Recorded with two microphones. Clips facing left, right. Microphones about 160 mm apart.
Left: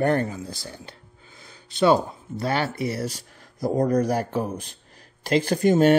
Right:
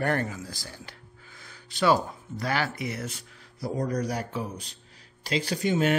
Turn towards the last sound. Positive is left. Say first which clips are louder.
# left 7 dB
turn(degrees=40)  # may be behind; listen again after turning